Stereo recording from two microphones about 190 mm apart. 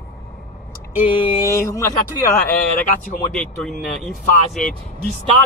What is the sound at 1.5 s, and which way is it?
Speech, 15° left (ahead or behind).